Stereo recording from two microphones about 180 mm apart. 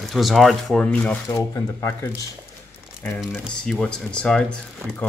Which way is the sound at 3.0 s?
5° left (ahead or behind).